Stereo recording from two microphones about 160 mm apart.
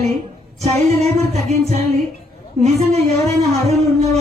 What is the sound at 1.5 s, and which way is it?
A woman's voice, 45° right (ahead or behind).